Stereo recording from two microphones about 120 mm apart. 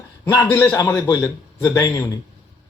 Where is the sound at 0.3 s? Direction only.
20° left (ahead or behind).